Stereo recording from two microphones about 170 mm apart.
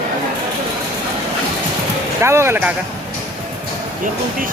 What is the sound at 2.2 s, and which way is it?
Speech, 15° right (ahead or behind).